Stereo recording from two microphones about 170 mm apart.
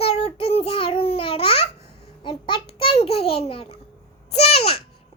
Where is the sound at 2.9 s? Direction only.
40° left (ahead or behind).